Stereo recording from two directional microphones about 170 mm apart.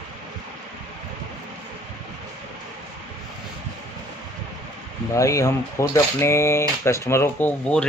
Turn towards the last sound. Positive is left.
turn(degrees=5)  # may be behind; listen again after turning